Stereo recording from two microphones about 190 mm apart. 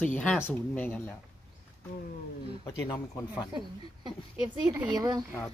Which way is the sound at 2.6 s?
15° left (ahead or behind).